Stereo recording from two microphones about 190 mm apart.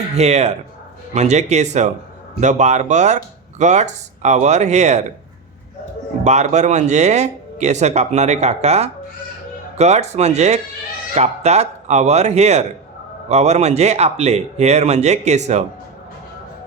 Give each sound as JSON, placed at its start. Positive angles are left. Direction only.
{"t": 0.2, "sound": "speech", "side_deg": -35}
{"t": 6.2, "sound": "speech", "side_deg": -35}